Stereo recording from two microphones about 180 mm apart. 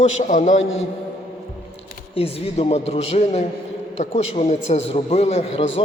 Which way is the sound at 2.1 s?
35° left (ahead or behind).